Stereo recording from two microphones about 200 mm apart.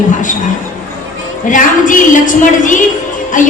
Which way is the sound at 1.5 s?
40° left (ahead or behind).